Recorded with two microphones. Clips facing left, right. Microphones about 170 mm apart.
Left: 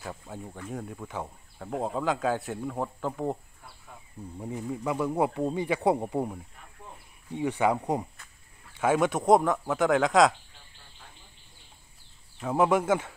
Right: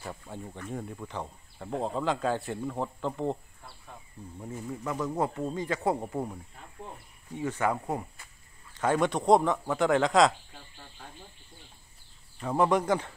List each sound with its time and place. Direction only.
0.0 s speech: centre (ahead or behind); by 8.1 s 20° left (ahead or behind)
8.7 s speech: 5° left (ahead or behind)
12.4 s speech: 5° left (ahead or behind)